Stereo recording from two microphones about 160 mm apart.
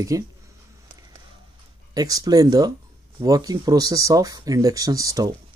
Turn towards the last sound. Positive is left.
turn(degrees=-20)  # may be behind; listen again after turning